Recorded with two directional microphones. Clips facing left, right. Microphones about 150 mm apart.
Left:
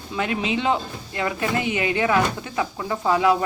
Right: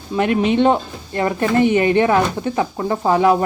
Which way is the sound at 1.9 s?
35° right (ahead or behind).